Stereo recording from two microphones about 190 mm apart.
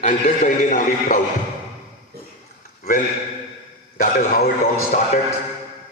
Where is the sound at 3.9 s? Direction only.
50° left (ahead or behind).